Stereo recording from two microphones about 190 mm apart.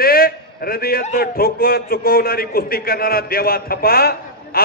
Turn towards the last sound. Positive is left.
turn(degrees=55)  # may be behind; listen again after turning